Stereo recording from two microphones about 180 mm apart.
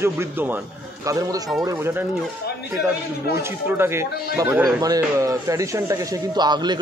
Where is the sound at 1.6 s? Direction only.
10° right (ahead or behind).